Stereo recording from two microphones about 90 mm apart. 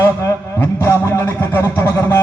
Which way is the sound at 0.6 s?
25° left (ahead or behind).